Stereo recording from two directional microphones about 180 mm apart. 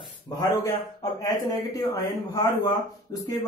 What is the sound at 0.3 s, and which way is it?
A man's voice, 20° left (ahead or behind).